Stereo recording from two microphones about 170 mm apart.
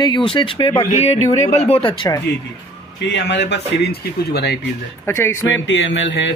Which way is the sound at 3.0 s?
90° left.